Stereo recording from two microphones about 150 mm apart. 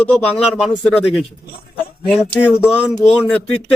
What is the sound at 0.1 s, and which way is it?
Speech, centre (ahead or behind).